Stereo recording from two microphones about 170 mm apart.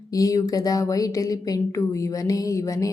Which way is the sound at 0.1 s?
20° left (ahead or behind).